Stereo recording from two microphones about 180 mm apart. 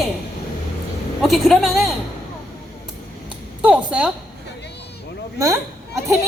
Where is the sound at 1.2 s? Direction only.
Centre (ahead or behind).